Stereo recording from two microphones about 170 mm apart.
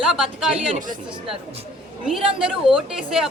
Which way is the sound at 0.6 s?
45° right (ahead or behind).